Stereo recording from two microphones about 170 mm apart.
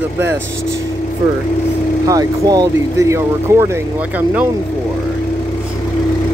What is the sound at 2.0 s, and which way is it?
Speech, 20° right (ahead or behind).